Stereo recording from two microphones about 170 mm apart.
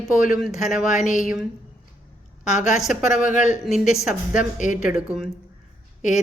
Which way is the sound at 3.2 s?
45° left (ahead or behind).